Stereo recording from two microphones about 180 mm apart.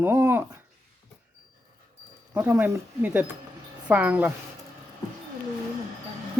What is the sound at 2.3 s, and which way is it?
Speech, 10° right (ahead or behind).